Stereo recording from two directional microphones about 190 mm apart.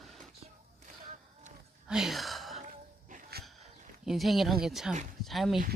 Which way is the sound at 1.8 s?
5° right (ahead or behind).